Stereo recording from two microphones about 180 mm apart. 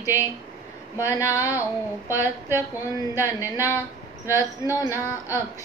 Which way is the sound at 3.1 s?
10° right (ahead or behind).